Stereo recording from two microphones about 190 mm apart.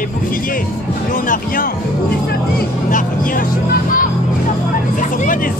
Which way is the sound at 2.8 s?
45° left (ahead or behind).